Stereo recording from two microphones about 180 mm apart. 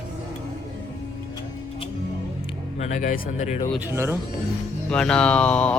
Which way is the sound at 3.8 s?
15° right (ahead or behind).